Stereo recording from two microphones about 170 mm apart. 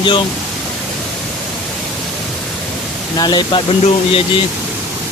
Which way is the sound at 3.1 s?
25° left (ahead or behind).